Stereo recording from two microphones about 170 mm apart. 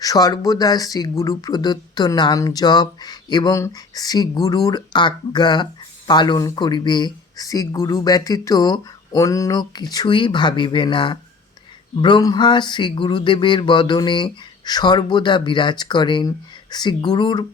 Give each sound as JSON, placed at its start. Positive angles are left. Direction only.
{"t": 0.0, "sound": "speech", "side_deg": 20}